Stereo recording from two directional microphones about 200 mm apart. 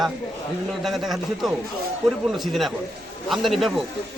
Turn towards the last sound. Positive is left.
turn(degrees=0)  # may be behind; listen again after turning